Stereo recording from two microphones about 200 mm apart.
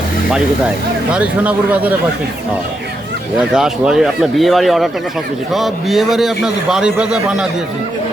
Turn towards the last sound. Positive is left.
turn(degrees=-5)  # may be behind; listen again after turning